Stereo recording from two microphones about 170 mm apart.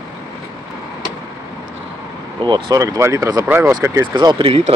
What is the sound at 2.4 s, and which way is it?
Speech, 25° right (ahead or behind).